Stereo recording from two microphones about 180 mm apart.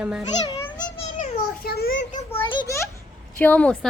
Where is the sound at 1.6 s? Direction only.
60° left (ahead or behind).